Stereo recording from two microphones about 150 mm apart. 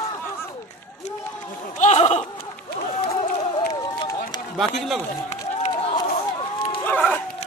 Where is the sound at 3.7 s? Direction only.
25° left (ahead or behind).